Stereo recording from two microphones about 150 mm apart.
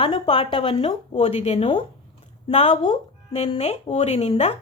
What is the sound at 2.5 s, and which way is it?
Speech, 45° left (ahead or behind).